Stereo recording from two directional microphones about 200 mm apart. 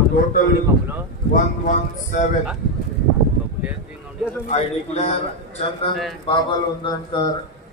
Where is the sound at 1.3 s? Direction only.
40° left (ahead or behind).